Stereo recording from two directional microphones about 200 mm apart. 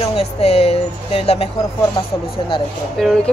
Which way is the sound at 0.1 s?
30° left (ahead or behind).